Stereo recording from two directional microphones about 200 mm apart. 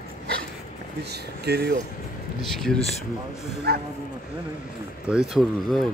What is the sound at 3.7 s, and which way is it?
Speech, 50° right (ahead or behind).